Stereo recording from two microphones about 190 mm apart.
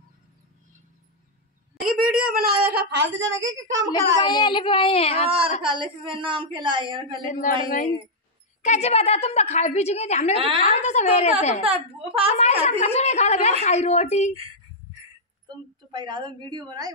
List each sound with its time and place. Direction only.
1.9 s a sound: 50° right (ahead or behind); by 3.8 s 80° right
3.9 s speech: 20° left (ahead or behind)
5.3 s a woman's voice: 25° right (ahead or behind)
7.3 s a woman's voice: 45° left (ahead or behind)
11.6 s a woman's voice: 30° right (ahead or behind)
12.7 s a woman's voice: 35° left (ahead or behind)
15.9 s a woman's voice: 25° right (ahead or behind)